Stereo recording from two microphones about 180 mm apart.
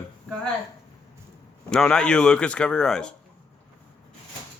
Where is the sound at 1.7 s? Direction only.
5° left (ahead or behind).